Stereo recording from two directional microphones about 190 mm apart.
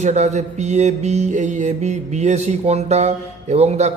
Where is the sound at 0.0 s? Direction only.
35° right (ahead or behind).